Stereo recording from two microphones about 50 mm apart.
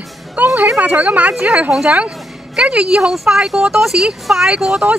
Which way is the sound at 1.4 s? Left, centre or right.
Right.